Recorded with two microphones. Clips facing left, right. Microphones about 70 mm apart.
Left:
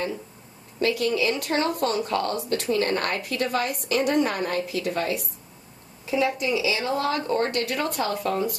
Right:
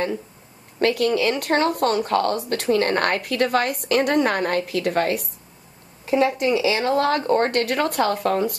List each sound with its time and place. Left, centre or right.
0.7 s a woman's voice: right